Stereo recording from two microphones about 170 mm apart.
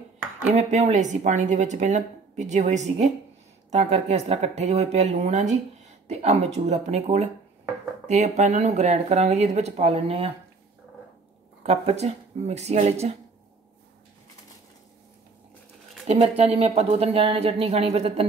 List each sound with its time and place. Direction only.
0.5 s speech: 45° right (ahead or behind)
11.6 s speech: 40° right (ahead or behind)
16.1 s speech: 35° right (ahead or behind)